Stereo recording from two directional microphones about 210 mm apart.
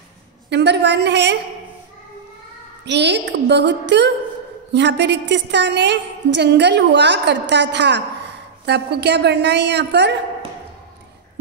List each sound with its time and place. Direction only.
0.5 s a woman's voice: 55° right (ahead or behind)
2.8 s a woman's voice: 55° right (ahead or behind)